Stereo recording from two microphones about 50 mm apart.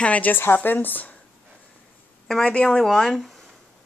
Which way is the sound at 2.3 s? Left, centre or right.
Centre.